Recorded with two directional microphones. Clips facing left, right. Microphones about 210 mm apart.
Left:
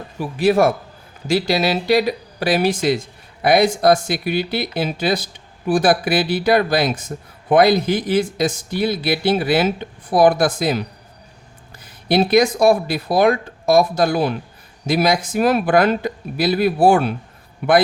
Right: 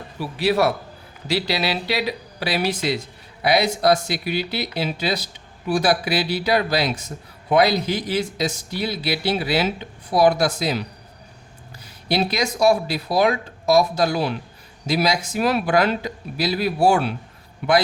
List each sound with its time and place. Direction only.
0.2 s speech: 50° left (ahead or behind)
12.0 s speech: 50° left (ahead or behind)